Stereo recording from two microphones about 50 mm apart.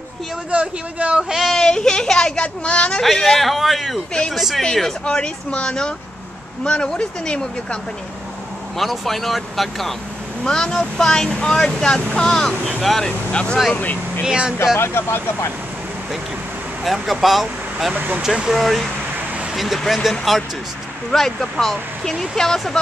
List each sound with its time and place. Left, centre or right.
0.5 s a man's voice: right
1.5 s speech: centre
3.0 s speech: centre
5.0 s speech: left
8.7 s speech: centre
10.4 s speech: centre
13.3 s speech: left
13.7 s speech: left
14.2 s a man's voice: right
14.8 s speech: left
16.8 s speech: centre
17.9 s speech: right
18.2 s speech: centre
18.5 s speech: centre